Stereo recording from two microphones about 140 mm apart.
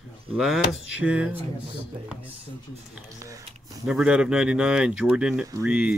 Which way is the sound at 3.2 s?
25° right (ahead or behind).